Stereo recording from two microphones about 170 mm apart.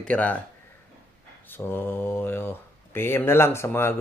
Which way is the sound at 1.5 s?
15° left (ahead or behind).